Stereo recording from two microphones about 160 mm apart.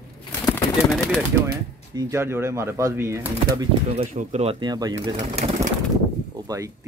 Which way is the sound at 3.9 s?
45° right (ahead or behind).